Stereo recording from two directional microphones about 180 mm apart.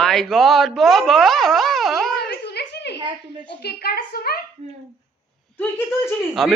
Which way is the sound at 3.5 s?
60° left (ahead or behind).